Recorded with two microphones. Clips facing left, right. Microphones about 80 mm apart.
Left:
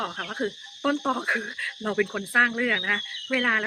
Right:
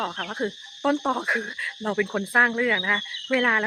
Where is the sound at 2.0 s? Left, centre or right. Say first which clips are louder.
Right 3 dB; right.